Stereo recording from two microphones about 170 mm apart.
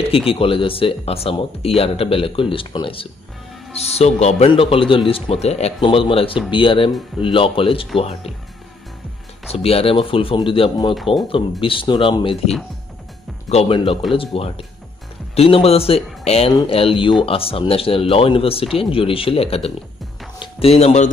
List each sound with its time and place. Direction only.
0.3 s speech: 30° left (ahead or behind)
4.2 s speech: 35° left (ahead or behind)
9.5 s speech: 35° left (ahead or behind)